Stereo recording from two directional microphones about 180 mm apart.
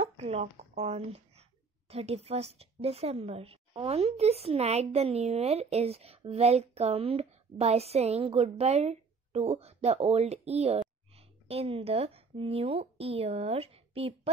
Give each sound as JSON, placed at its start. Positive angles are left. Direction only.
{"t": 0.0, "sound": "speech", "side_deg": -35}